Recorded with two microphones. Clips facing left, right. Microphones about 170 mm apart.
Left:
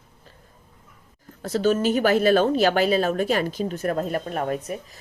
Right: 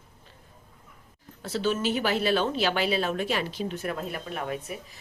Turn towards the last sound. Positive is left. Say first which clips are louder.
# left 6 dB
turn(degrees=40)  # may be behind; listen again after turning